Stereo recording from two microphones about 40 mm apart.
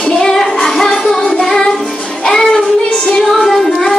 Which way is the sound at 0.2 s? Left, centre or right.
Centre.